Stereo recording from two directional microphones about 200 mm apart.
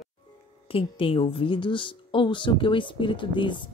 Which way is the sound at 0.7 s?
25° left (ahead or behind).